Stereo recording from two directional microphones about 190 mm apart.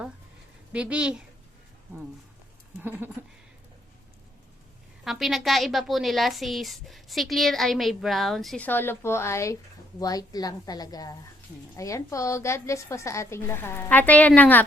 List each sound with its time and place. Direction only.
0.7 s a woman's voice: 5° right (ahead or behind)
5.0 s a woman's voice: centre (ahead or behind)